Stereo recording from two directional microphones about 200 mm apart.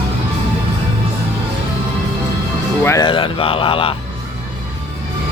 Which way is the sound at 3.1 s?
25° left (ahead or behind).